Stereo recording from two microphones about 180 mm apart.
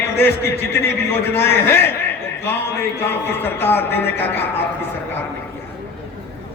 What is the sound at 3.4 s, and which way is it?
A man's voice, 10° left (ahead or behind).